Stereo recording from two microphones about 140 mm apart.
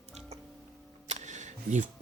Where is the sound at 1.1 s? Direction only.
60° right (ahead or behind).